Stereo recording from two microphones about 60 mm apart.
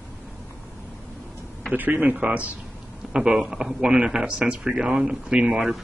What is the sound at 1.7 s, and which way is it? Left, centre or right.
Speech, right.